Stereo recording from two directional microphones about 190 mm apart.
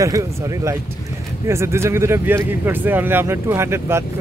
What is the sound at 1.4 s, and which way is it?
Speech, 15° right (ahead or behind).